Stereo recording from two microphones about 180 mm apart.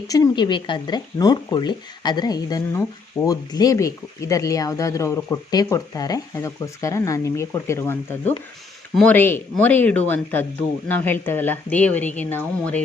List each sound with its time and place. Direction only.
0.1 s speech: 20° left (ahead or behind)